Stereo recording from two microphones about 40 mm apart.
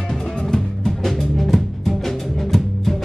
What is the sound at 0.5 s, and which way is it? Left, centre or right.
Music, centre.